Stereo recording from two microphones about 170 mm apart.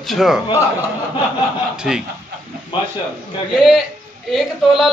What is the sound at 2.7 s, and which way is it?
Speech, 30° left (ahead or behind).